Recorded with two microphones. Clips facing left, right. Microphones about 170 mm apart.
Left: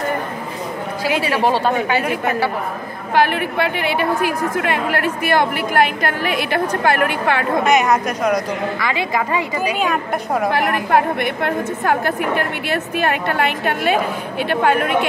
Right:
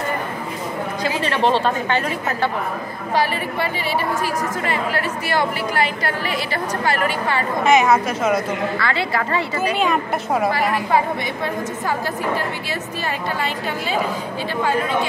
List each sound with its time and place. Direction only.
1.2 s a woman's voice: 10° left (ahead or behind)
3.2 s a woman's voice: 60° left (ahead or behind)
7.6 s a woman's voice: centre (ahead or behind)
8.7 s a woman's voice: 15° left (ahead or behind)
9.8 s a woman's voice: centre (ahead or behind)
10.5 s a woman's voice: 60° left (ahead or behind)